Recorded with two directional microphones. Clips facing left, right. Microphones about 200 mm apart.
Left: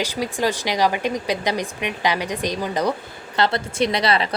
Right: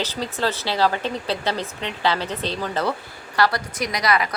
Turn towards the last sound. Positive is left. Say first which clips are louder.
# left 2 dB
turn(degrees=30)  # may be behind; listen again after turning